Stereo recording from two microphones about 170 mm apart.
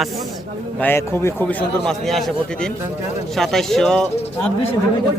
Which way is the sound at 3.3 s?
Centre (ahead or behind).